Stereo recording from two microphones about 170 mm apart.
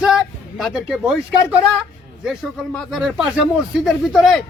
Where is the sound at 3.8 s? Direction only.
Centre (ahead or behind).